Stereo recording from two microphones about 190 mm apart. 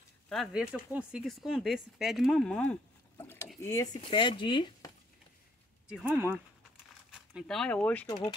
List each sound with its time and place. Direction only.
0.3 s speech: centre (ahead or behind)
3.2 s rowboat: 15° left (ahead or behind)
3.6 s speech: 20° left (ahead or behind)
5.9 s speech: 5° right (ahead or behind)
8.1 s speech: 25° left (ahead or behind)